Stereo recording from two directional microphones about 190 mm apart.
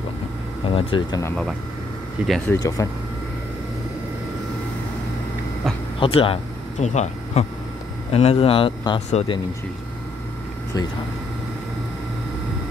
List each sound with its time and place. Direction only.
0.7 s a man's voice: 30° left (ahead or behind)
2.2 s speech: 5° left (ahead or behind)
5.9 s a man's voice: 30° left (ahead or behind)